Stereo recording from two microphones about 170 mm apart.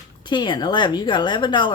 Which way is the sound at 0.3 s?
25° left (ahead or behind).